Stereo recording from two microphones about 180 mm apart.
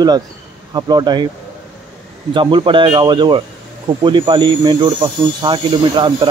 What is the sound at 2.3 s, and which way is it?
Speech, 25° right (ahead or behind).